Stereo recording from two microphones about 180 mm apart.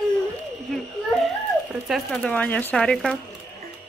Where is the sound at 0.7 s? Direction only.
Centre (ahead or behind).